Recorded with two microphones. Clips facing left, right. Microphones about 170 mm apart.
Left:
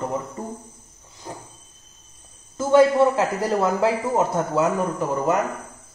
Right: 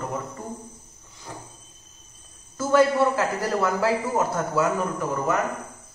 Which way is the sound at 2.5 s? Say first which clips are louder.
Left 4 dB; 20° left (ahead or behind).